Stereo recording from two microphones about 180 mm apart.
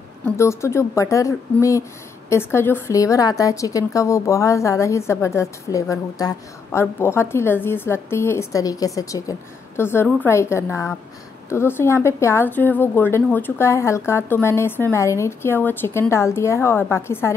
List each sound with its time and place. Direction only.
0.4 s speech: 15° left (ahead or behind)